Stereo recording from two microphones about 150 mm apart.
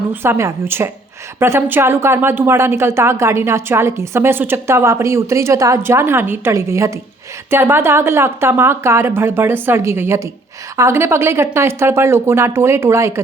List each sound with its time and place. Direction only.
0.1 s speech: 15° right (ahead or behind)